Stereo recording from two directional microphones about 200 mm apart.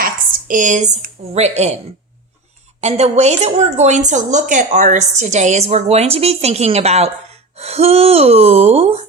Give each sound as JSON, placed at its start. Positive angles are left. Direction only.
{"t": 0.0, "sound": "speech", "side_deg": -45}
{"t": 2.8, "sound": "a woman's voice", "side_deg": -35}